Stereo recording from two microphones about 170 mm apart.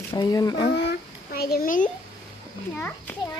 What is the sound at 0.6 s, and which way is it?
A child's voice, 80° left.